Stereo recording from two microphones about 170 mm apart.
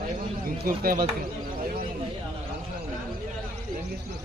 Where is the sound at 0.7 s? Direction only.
60° right (ahead or behind).